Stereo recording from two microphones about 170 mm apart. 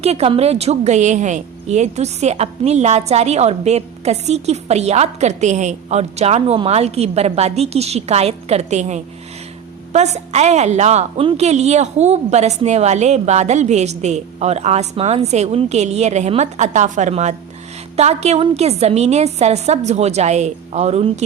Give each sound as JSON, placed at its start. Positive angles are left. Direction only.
{"t": 0.0, "sound": "a woman's voice", "side_deg": -35}